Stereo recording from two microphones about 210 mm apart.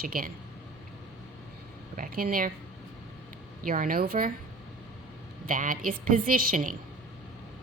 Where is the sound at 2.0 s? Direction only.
45° right (ahead or behind).